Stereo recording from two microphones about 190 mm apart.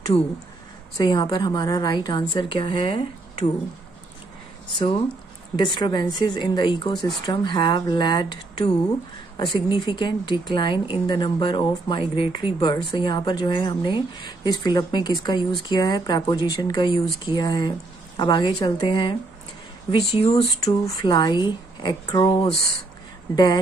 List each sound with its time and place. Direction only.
0.9 s speech: 20° left (ahead or behind)
4.7 s speech: 30° left (ahead or behind)
20.2 s speech: 35° left (ahead or behind)
20.6 s speech: 20° left (ahead or behind)